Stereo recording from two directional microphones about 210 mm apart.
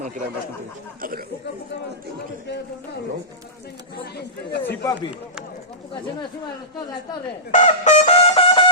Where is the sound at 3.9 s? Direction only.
50° left (ahead or behind).